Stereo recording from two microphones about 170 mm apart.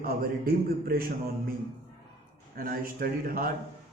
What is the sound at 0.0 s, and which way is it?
A man's voice, 60° right (ahead or behind).